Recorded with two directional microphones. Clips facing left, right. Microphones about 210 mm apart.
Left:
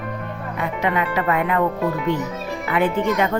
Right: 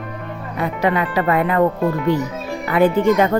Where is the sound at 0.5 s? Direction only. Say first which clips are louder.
Right 4 dB; 35° right (ahead or behind).